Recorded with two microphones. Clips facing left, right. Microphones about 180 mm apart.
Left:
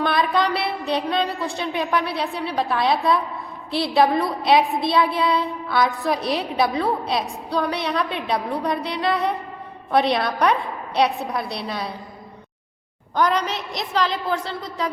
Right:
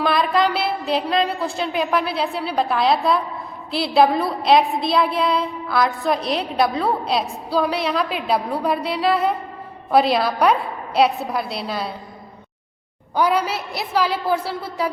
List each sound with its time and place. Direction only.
0.0 s a woman's voice: centre (ahead or behind)
13.1 s a woman's voice: 5° right (ahead or behind)